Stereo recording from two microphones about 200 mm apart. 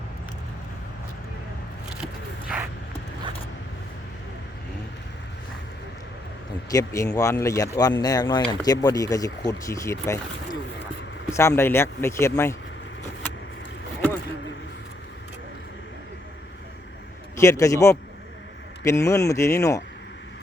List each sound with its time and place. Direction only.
2.5 s a sound: 5° right (ahead or behind)
6.7 s speech: 15° left (ahead or behind)
11.3 s speech: 15° left (ahead or behind)
17.3 s speech: 15° left (ahead or behind)